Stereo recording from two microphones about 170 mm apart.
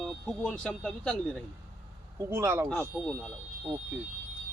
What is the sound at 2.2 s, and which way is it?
Speech, 15° right (ahead or behind).